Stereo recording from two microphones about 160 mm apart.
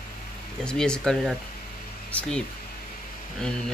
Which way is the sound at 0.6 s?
5° left (ahead or behind).